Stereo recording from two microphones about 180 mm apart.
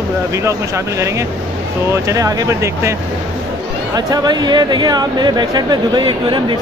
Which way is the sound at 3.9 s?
20° right (ahead or behind).